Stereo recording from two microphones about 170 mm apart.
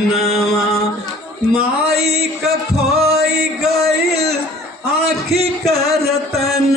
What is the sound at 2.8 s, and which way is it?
Music, 35° right (ahead or behind).